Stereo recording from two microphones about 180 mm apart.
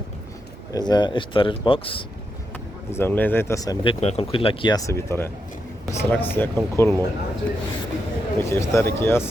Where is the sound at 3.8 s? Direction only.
35° left (ahead or behind); by 6.9 s 15° left (ahead or behind).